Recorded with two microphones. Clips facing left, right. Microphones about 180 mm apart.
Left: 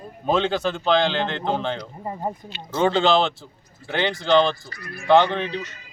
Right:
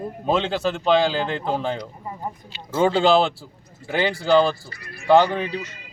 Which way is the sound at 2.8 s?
10° right (ahead or behind).